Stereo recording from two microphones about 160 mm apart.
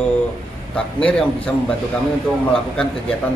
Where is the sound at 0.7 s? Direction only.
5° left (ahead or behind).